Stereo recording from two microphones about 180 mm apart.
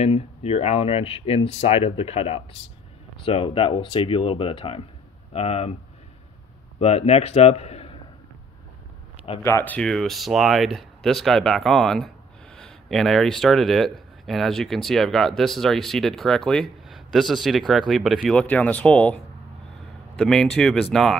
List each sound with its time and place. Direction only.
0.0 s speech: 35° left (ahead or behind)
6.8 s a man's voice: 35° left (ahead or behind)
9.4 s speech: 15° left (ahead or behind)
9.8 s speech: 5° left (ahead or behind)